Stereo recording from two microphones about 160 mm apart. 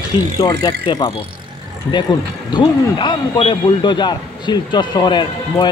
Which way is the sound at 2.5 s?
30° left (ahead or behind).